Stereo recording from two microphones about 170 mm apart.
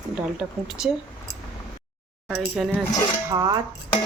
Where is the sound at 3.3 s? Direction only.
20° right (ahead or behind).